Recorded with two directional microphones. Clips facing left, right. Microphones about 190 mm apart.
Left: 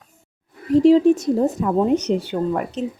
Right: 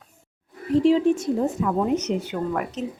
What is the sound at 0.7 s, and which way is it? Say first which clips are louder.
Speech: left 5 dB; 40° left (ahead or behind).